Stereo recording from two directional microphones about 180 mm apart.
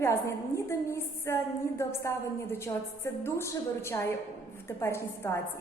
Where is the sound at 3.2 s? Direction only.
15° left (ahead or behind).